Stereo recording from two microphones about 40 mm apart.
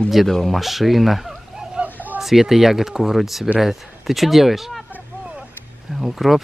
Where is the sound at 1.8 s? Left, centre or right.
Right.